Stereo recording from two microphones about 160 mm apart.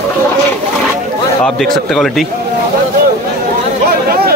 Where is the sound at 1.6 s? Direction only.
Centre (ahead or behind).